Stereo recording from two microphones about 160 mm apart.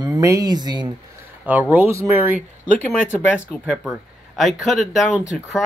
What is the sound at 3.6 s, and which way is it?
Speech, 5° right (ahead or behind).